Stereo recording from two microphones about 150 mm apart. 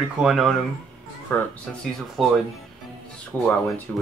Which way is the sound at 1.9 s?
Centre (ahead or behind).